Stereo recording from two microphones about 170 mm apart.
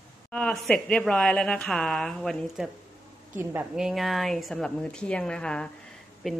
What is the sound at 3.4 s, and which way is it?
Speech, 15° right (ahead or behind).